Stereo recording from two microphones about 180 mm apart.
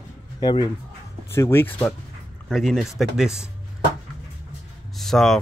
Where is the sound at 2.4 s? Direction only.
Centre (ahead or behind).